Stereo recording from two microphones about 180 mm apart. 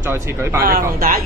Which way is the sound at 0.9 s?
55° right (ahead or behind).